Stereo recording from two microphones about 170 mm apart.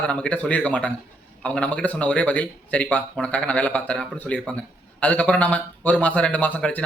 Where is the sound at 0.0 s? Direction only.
5° left (ahead or behind).